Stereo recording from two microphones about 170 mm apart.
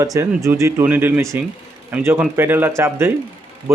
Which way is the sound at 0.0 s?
20° right (ahead or behind).